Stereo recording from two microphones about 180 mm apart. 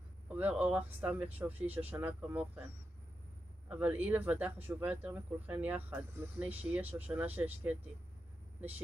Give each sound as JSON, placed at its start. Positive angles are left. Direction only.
{"t": 0.3, "sound": "speech", "side_deg": -10}